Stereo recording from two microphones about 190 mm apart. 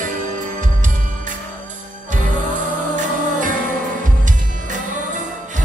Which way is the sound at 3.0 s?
40° right (ahead or behind).